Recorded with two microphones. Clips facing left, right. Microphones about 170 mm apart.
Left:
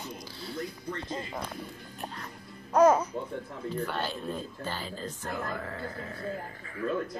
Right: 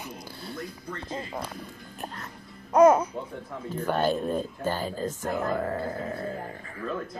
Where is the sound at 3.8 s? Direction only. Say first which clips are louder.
Right 10 dB; 50° right (ahead or behind).